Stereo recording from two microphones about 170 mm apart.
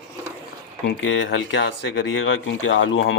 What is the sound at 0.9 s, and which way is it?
Speech, 90° left.